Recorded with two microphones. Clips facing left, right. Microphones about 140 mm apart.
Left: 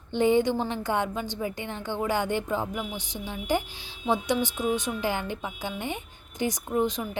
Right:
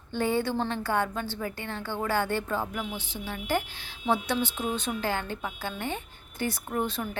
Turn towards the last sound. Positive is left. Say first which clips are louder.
# left 4 dB
turn(degrees=15)  # may be behind; listen again after turning